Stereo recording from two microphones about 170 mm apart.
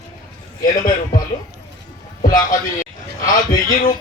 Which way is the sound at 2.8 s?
50° left (ahead or behind).